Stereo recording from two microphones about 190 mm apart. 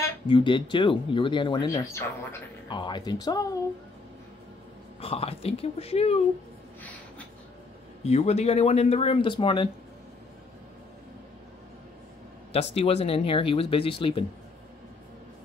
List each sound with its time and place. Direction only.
0.3 s speech: 25° left (ahead or behind)
5.0 s speech: 30° left (ahead or behind)
6.8 s gasp: 10° left (ahead or behind)
8.0 s speech: 35° left (ahead or behind)
12.7 s speech: 30° left (ahead or behind)